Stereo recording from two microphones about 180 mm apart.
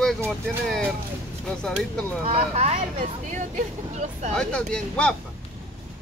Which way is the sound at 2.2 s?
35° right (ahead or behind).